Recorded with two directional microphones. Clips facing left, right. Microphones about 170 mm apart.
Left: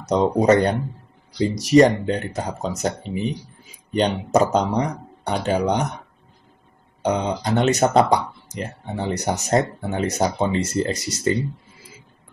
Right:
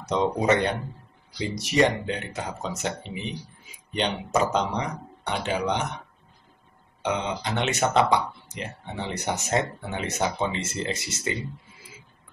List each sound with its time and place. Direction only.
0.1 s speech: 40° left (ahead or behind)
7.0 s speech: 40° left (ahead or behind)